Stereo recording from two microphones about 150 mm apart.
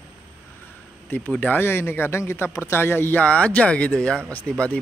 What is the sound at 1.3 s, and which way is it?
Speech, 10° left (ahead or behind).